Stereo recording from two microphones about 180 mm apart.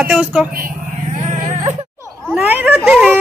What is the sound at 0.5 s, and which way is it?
Vehicle, 50° right (ahead or behind).